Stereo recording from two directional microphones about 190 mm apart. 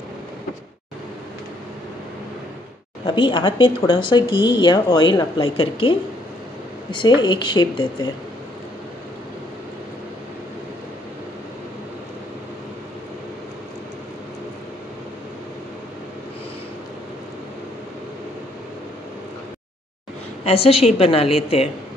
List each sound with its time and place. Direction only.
3.2 s speech: 25° left (ahead or behind)
20.4 s a woman's voice: 30° left (ahead or behind)